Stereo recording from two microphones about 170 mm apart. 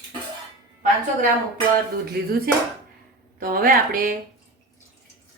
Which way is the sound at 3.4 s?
60° right (ahead or behind).